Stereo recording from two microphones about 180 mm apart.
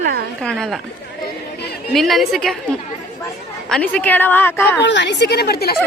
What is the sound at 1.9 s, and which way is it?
A woman's voice, centre (ahead or behind).